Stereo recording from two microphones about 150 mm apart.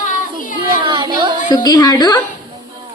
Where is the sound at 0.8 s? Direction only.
30° right (ahead or behind).